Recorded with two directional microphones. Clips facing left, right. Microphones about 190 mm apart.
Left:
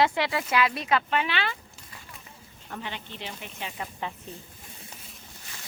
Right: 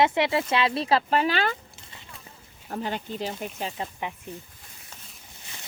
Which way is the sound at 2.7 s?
40° right (ahead or behind).